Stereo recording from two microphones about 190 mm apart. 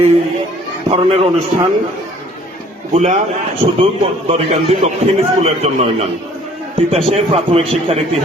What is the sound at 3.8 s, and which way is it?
Speech, 30° right (ahead or behind).